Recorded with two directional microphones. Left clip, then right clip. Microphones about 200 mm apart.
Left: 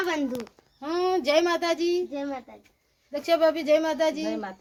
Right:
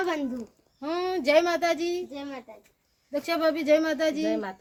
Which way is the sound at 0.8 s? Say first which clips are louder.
Left 3 dB; 5° left (ahead or behind).